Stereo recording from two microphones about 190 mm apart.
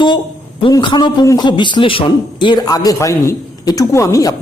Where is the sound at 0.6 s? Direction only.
25° left (ahead or behind).